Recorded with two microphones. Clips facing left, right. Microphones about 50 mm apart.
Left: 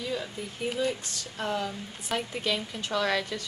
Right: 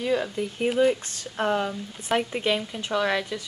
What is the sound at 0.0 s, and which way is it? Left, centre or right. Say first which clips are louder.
A woman's voice: right 8 dB; right.